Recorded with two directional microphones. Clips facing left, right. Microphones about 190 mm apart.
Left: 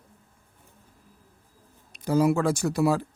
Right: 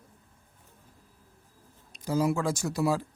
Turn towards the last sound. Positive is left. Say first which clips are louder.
# left 4 dB
turn(degrees=60)  # may be behind; listen again after turning